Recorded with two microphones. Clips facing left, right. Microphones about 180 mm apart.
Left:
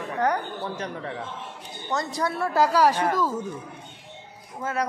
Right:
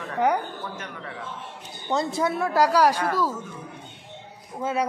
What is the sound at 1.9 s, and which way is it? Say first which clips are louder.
Speech: right 3 dB; 10° right (ahead or behind).